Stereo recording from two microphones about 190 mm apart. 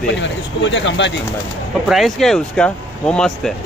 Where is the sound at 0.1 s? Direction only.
70° left (ahead or behind).